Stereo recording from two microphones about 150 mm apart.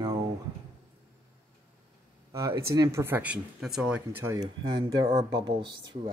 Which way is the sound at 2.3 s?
20° right (ahead or behind).